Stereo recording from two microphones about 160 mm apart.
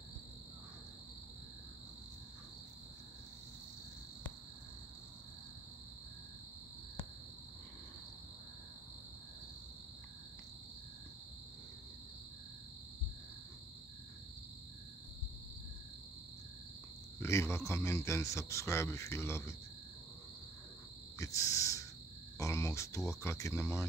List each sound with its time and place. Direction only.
17.2 s a man's voice: 15° left (ahead or behind)
21.2 s owl: 20° left (ahead or behind)
22.4 s a man's voice: 20° left (ahead or behind)